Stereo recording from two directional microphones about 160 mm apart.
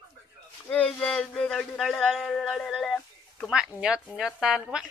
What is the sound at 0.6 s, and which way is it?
Speech, 10° left (ahead or behind).